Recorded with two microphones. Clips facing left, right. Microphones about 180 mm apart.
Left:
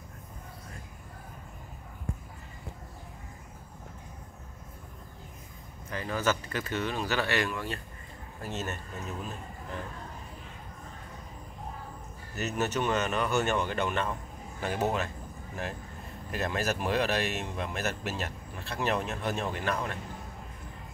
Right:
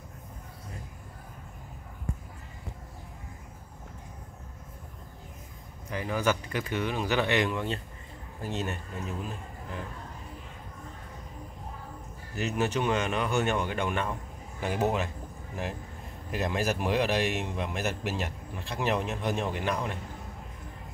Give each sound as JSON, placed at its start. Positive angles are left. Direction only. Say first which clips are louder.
{"t": 5.9, "sound": "a man's voice", "louder": "right 2 dB", "side_deg": -15}
{"t": 12.4, "sound": "a man's voice", "louder": "right 2 dB", "side_deg": -15}
{"t": 16.3, "sound": "a man's voice", "louder": "right 2 dB", "side_deg": -15}